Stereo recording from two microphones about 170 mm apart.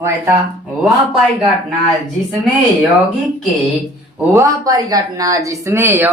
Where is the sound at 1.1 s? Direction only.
Centre (ahead or behind).